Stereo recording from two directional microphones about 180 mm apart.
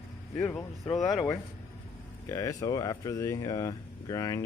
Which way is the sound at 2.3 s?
15° left (ahead or behind).